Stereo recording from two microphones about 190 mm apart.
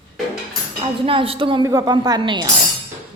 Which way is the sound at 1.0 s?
30° right (ahead or behind).